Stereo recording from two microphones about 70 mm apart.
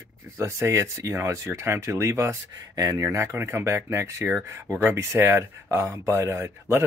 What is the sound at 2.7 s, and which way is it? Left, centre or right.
Speech, right.